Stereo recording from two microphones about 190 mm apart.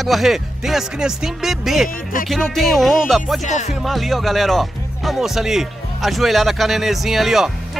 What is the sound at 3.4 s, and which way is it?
Speech, 40° left (ahead or behind).